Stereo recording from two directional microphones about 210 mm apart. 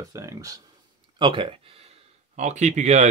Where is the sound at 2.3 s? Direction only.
35° right (ahead or behind).